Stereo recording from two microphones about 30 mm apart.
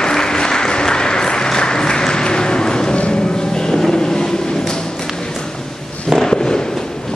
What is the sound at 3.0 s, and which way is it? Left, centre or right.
Music, left.